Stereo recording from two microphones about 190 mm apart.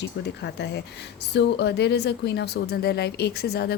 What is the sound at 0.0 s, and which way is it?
Speech, 65° left (ahead or behind).